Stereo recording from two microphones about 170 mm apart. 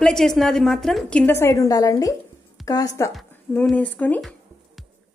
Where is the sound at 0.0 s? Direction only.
5° left (ahead or behind); by 2.9 s 20° left (ahead or behind).